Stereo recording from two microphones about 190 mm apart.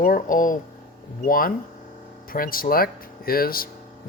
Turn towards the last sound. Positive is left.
turn(degrees=50)  # may be behind; listen again after turning